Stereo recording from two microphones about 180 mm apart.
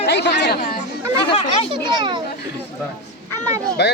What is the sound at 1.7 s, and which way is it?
Speech, 25° right (ahead or behind).